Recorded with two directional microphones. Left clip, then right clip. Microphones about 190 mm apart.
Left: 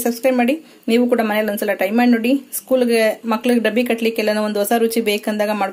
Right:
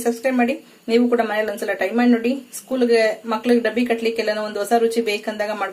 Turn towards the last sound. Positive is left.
turn(degrees=40)  # may be behind; listen again after turning